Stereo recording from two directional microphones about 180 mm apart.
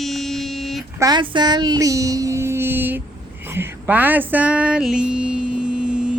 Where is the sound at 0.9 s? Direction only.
20° right (ahead or behind).